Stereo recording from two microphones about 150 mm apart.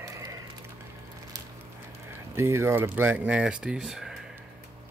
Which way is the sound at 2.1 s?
15° right (ahead or behind).